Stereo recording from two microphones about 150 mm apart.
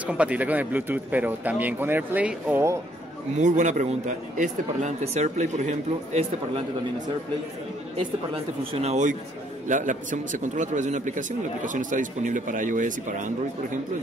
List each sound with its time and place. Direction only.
0.0 s speech: 10° right (ahead or behind)
3.3 s speech: 55° right (ahead or behind)
8.7 s a man's voice: 50° right (ahead or behind)